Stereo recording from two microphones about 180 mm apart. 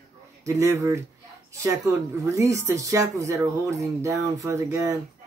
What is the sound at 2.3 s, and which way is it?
Speech, 15° right (ahead or behind).